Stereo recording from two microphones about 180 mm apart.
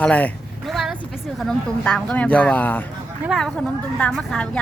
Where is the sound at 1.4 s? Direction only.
5° left (ahead or behind).